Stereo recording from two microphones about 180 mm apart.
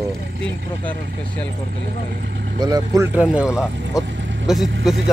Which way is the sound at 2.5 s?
20° right (ahead or behind).